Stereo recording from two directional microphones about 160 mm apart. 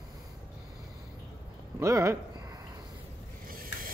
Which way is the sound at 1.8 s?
20° right (ahead or behind).